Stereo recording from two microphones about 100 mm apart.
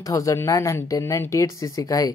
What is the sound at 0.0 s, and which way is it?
Speech, 35° left (ahead or behind).